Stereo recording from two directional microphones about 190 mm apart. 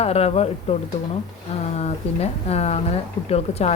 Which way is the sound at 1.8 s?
35° left (ahead or behind).